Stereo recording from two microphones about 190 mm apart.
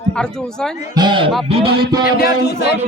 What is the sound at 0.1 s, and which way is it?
Speech, 5° left (ahead or behind).